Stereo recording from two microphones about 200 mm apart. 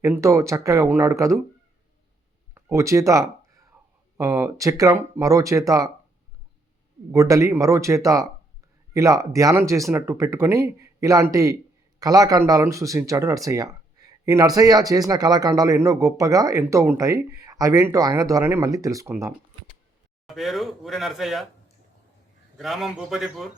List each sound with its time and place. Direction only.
0.0 s speech: 15° right (ahead or behind)
2.6 s a sound: 15° right (ahead or behind)
4.2 s speech: 15° right (ahead or behind)
7.1 s speech: 15° right (ahead or behind)
20.2 s speech: centre (ahead or behind)
22.5 s speech: centre (ahead or behind)